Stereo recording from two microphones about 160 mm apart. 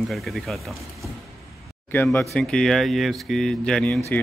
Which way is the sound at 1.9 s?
10° left (ahead or behind).